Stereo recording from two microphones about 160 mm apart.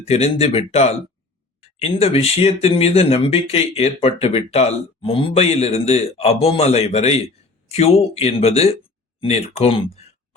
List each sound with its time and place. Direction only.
0.0 s speech: 40° left (ahead or behind)